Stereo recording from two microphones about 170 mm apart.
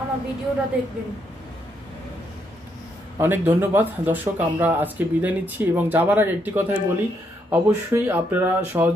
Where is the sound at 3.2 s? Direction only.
10° right (ahead or behind).